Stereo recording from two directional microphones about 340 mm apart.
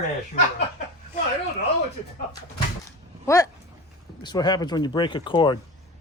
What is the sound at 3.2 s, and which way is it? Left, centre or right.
Speech, centre.